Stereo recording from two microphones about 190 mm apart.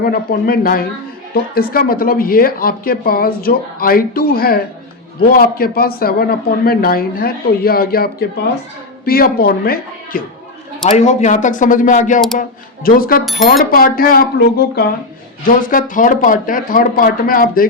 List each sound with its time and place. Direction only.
0.0 s speech: 50° left (ahead or behind)
10.8 s speech: 40° left (ahead or behind)